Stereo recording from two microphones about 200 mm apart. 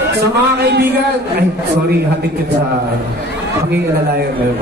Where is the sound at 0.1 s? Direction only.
55° right (ahead or behind).